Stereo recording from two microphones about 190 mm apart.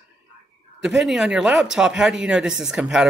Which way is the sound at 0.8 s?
Centre (ahead or behind).